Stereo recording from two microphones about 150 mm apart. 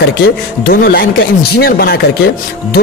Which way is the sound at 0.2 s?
90° left.